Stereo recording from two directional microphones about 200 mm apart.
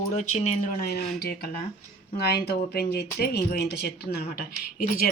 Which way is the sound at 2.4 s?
55° left (ahead or behind).